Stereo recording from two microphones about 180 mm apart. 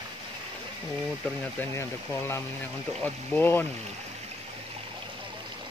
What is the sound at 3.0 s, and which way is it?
Speech, 10° left (ahead or behind).